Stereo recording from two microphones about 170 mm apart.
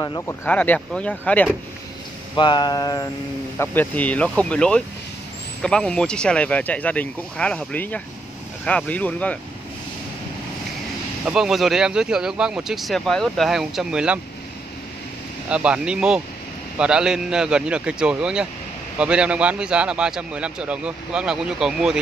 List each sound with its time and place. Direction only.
0.0 s speech: 20° left (ahead or behind)
0.5 s speech: 10° left (ahead or behind)
2.3 s speech: 25° left (ahead or behind)
3.5 s speech: 10° left (ahead or behind)
11.2 s speech: 5° right (ahead or behind)
15.4 s speech: 5° right (ahead or behind)